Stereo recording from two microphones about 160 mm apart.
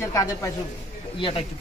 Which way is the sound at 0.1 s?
20° left (ahead or behind).